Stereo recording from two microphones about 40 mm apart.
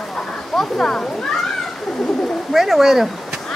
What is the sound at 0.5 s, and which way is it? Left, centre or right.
Speech, centre.